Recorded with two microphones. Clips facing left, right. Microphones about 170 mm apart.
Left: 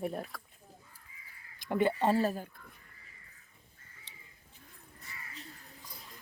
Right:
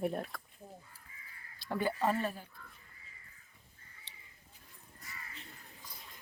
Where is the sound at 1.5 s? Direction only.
20° left (ahead or behind); by 2.5 s 40° left (ahead or behind).